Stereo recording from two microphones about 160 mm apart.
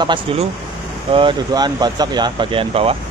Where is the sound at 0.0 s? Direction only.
30° right (ahead or behind).